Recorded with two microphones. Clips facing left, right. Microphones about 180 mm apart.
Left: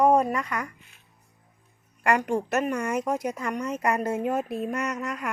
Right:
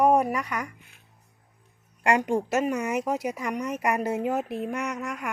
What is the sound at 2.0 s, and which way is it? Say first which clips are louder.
Speech: right 1 dB; 20° right (ahead or behind).